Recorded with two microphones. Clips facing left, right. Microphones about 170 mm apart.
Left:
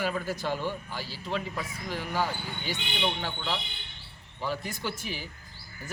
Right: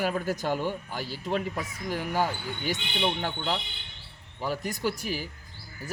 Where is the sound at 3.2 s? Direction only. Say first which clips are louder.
Right 3 dB; 45° right (ahead or behind).